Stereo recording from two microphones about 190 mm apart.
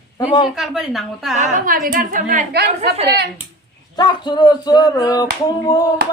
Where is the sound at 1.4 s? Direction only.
45° right (ahead or behind).